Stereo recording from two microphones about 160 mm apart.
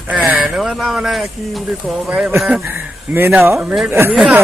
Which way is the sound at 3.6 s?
Centre (ahead or behind).